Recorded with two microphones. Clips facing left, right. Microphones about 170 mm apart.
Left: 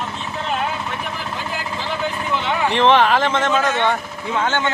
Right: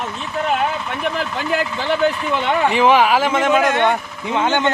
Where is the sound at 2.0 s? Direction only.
65° right (ahead or behind).